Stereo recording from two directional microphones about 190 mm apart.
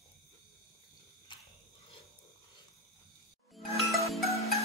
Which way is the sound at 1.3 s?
25° left (ahead or behind).